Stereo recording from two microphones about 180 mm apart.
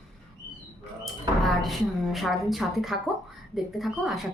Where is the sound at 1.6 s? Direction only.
Centre (ahead or behind).